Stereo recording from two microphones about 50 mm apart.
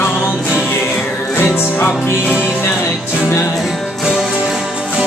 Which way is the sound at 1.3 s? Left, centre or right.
Left.